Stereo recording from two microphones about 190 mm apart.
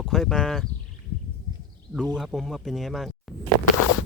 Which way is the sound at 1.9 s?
Centre (ahead or behind).